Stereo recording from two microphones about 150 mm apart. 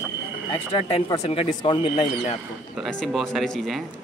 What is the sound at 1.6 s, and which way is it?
Speech, 35° left (ahead or behind).